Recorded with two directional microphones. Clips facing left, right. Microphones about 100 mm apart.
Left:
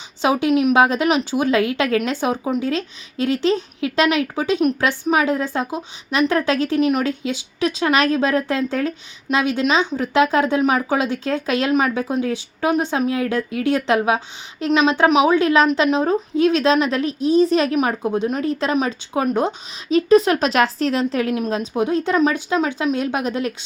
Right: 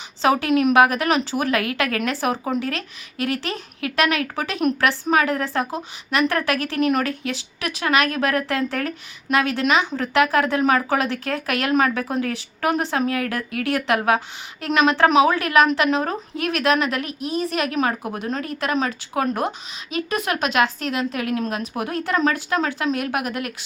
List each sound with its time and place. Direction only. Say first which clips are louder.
0.2 s a woman's voice: left 1 dB; 20° left (ahead or behind)